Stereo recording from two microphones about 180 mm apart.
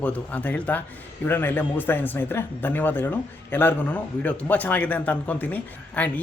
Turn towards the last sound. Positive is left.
turn(degrees=10)  # may be behind; listen again after turning